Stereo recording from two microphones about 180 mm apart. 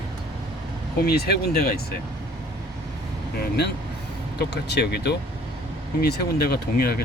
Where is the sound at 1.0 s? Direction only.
60° left (ahead or behind).